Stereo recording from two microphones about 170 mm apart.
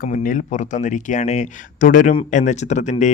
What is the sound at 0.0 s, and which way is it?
Speech, 50° left (ahead or behind).